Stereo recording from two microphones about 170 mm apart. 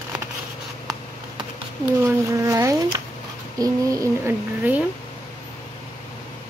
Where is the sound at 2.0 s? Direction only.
15° right (ahead or behind).